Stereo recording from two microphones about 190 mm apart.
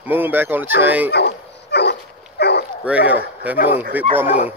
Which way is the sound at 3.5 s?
50° left (ahead or behind).